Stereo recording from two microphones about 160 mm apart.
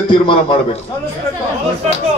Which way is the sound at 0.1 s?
30° left (ahead or behind).